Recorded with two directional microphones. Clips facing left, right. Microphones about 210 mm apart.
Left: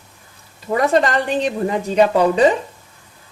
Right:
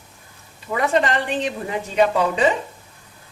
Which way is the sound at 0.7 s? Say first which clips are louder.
Left 4 dB; 40° left (ahead or behind).